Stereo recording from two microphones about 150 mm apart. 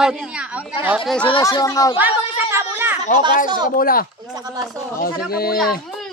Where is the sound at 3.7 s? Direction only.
75° left (ahead or behind).